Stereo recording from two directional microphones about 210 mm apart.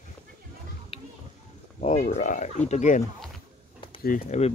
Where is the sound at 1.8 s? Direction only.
35° left (ahead or behind).